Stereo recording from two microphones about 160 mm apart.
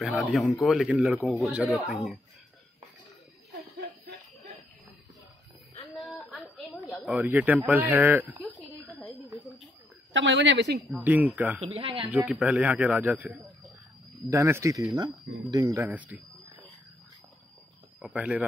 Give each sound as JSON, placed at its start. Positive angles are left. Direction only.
{"t": 0.0, "sound": "a man's voice", "side_deg": 0}
{"t": 6.4, "sound": "a sound", "side_deg": 0}
{"t": 7.2, "sound": "speech", "side_deg": -10}
{"t": 9.0, "sound": "a sound", "side_deg": 0}
{"t": 10.3, "sound": "a woman's voice", "side_deg": -90}
{"t": 11.1, "sound": "speech", "side_deg": -10}
{"t": 11.6, "sound": "speech", "side_deg": -35}
{"t": 12.1, "sound": "speech", "side_deg": 0}
{"t": 15.8, "sound": "speech", "side_deg": -10}
{"t": 18.0, "sound": "speech", "side_deg": -10}